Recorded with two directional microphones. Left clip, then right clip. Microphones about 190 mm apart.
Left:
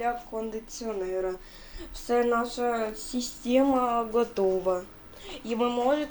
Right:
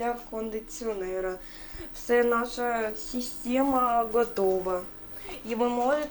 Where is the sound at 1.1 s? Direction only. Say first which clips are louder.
Left 1 dB; 15° left (ahead or behind).